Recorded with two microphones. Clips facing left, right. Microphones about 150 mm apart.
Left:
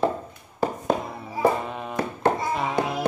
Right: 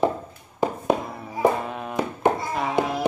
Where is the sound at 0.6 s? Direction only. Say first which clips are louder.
Right 2 dB; 15° right (ahead or behind).